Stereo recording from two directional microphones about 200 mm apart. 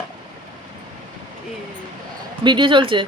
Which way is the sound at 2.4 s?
25° right (ahead or behind).